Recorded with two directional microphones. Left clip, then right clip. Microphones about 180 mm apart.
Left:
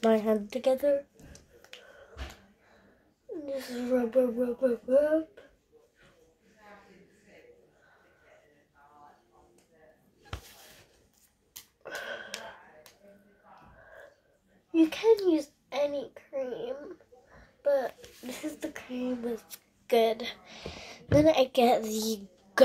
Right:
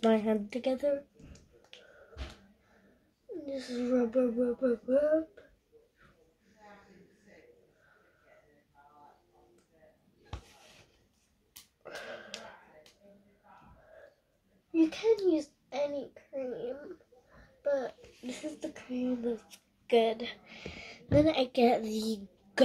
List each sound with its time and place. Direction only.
0.1 s speech: centre (ahead or behind)
3.5 s a woman's voice: centre (ahead or behind)
11.8 s a sound: centre (ahead or behind)
14.7 s a child's voice: centre (ahead or behind)